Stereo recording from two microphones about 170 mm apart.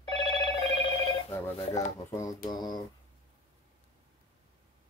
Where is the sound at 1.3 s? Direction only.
15° left (ahead or behind).